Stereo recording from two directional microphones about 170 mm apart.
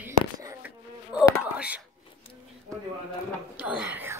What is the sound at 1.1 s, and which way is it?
Speech, 5° right (ahead or behind).